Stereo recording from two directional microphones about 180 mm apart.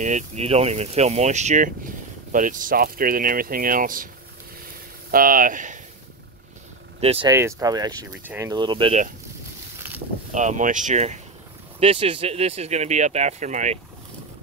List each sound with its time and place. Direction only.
0.0 s speech: 40° right (ahead or behind)
5.1 s speech: 50° right (ahead or behind)
7.0 s speech: 35° right (ahead or behind)
7.2 s speech: 15° right (ahead or behind)
10.3 s speech: 40° right (ahead or behind)
11.8 s speech: 30° right (ahead or behind)